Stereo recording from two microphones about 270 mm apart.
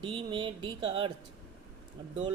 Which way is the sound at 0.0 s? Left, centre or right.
Centre.